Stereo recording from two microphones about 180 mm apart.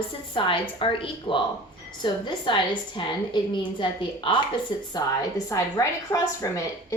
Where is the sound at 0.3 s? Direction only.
30° left (ahead or behind).